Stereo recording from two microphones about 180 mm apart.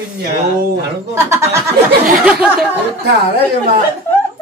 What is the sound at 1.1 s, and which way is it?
Speech, 15° right (ahead or behind).